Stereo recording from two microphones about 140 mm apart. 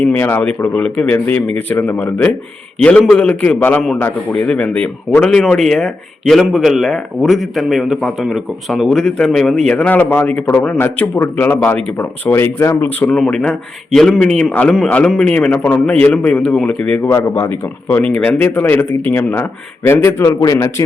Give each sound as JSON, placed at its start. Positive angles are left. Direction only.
{"t": 0.0, "sound": "a man's voice", "side_deg": 10}
{"t": 13.1, "sound": "a man's voice", "side_deg": 5}
{"t": 17.1, "sound": "a man's voice", "side_deg": 20}